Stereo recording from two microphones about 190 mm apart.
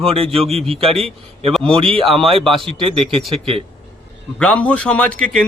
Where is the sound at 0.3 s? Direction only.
30° right (ahead or behind).